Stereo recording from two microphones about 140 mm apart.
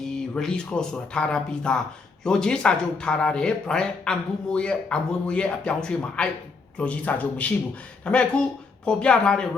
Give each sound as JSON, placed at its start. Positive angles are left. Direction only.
{"t": 0.0, "sound": "speech", "side_deg": 5}